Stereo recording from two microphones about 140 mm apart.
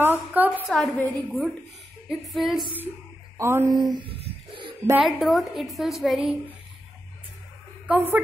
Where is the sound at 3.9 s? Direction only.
40° right (ahead or behind).